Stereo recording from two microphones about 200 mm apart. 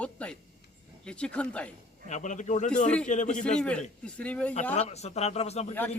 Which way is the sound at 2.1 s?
35° left (ahead or behind).